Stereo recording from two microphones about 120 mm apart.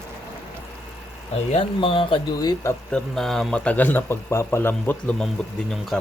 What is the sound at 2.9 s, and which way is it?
Speech, 5° left (ahead or behind).